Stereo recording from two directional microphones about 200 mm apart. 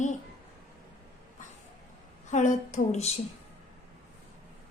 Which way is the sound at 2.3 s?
35° left (ahead or behind).